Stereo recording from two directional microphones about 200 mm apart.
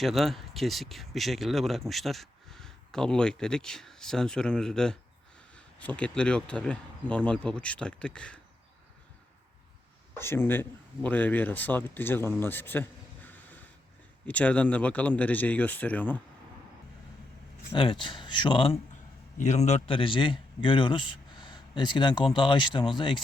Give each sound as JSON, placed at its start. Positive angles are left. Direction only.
{"t": 0.0, "sound": "speech", "side_deg": 0}
{"t": 10.2, "sound": "speech", "side_deg": 10}
{"t": 12.4, "sound": "a sound", "side_deg": 10}
{"t": 14.3, "sound": "speech", "side_deg": 5}
{"t": 17.7, "sound": "a man's voice", "side_deg": 25}